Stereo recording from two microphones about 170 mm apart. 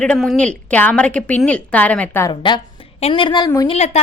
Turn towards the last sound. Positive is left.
turn(degrees=40)  # may be behind; listen again after turning